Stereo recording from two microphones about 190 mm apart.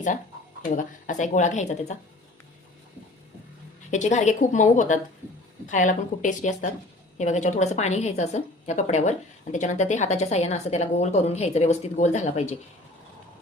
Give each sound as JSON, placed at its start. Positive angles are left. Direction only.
{"t": 0.6, "sound": "a woman's voice", "side_deg": 45}
{"t": 3.9, "sound": "a woman's voice", "side_deg": 40}